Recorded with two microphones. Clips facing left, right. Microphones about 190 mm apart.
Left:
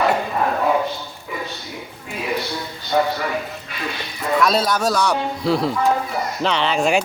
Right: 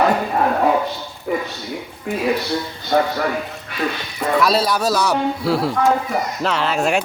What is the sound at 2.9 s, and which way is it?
Speech, 50° right (ahead or behind).